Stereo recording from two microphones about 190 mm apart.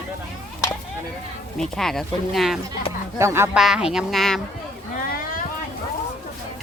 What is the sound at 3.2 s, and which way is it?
Speech, 15° right (ahead or behind).